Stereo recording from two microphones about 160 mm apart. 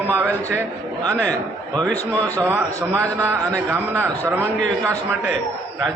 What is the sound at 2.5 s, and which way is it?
A man's voice, 15° right (ahead or behind).